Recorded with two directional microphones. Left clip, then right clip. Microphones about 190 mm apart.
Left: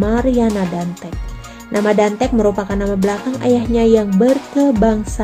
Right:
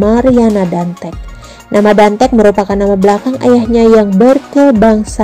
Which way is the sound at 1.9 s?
25° right (ahead or behind).